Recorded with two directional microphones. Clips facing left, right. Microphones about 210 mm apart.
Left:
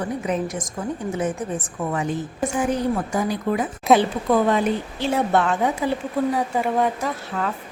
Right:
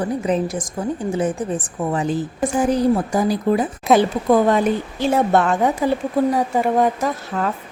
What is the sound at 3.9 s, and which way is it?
Speech, centre (ahead or behind).